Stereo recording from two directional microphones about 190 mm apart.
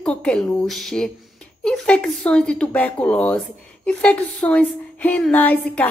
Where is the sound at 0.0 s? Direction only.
5° left (ahead or behind).